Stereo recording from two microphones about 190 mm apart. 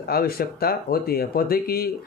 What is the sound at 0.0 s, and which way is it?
Speech, 55° left (ahead or behind).